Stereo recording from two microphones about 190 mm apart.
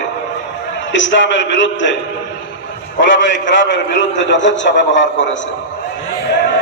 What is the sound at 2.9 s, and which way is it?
A man's voice, 75° left (ahead or behind).